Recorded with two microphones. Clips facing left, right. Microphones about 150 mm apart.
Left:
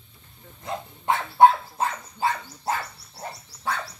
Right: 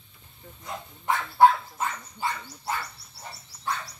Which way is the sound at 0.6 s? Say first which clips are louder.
Left 3 dB; 25° left (ahead or behind).